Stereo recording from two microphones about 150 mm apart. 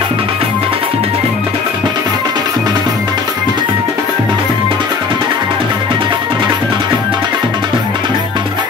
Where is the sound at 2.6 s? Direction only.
30° right (ahead or behind).